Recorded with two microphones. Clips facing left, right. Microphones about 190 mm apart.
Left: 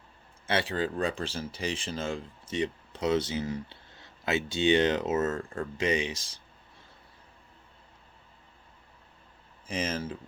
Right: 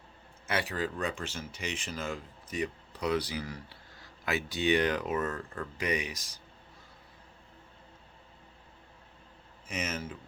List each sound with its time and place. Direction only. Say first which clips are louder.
0.4 s speech: left 4 dB; 30° left (ahead or behind)
9.6 s speech: left 4 dB; 30° left (ahead or behind)